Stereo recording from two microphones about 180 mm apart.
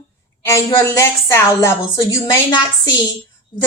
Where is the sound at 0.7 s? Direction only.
15° left (ahead or behind).